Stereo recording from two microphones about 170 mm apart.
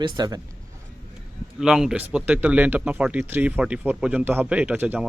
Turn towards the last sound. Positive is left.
turn(degrees=-5)  # may be behind; listen again after turning